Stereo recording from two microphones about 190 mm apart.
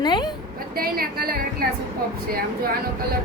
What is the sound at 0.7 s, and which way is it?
Speech, 50° right (ahead or behind).